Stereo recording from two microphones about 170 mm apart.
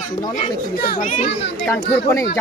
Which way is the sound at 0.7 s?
60° left (ahead or behind).